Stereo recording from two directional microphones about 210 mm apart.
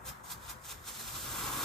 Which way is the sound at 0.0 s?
Centre (ahead or behind).